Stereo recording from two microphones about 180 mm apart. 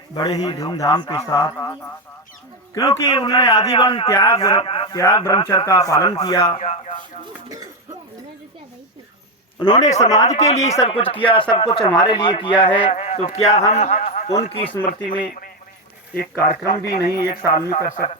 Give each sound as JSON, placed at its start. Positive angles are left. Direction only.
{"t": 0.2, "sound": "a man's voice", "side_deg": 25}
{"t": 4.9, "sound": "a man's voice", "side_deg": 15}
{"t": 6.1, "sound": "a man's voice", "side_deg": 30}
{"t": 9.6, "sound": "a man's voice", "side_deg": 25}
{"t": 9.8, "sound": "a man's voice", "side_deg": 40}
{"t": 16.3, "sound": "a man's voice", "side_deg": 20}